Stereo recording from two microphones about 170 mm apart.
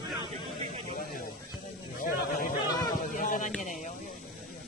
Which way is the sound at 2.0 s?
55° left (ahead or behind).